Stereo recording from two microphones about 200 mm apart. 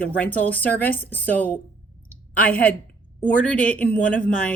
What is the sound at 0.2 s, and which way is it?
Speech, 10° left (ahead or behind).